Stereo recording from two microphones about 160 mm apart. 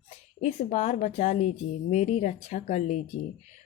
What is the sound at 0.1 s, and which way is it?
Speech, 40° left (ahead or behind).